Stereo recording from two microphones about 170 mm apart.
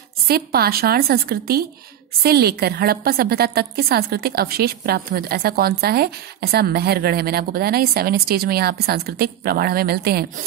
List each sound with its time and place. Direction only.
0.3 s a woman's voice: 65° right (ahead or behind)